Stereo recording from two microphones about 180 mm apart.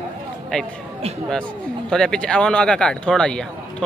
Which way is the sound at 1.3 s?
5° left (ahead or behind).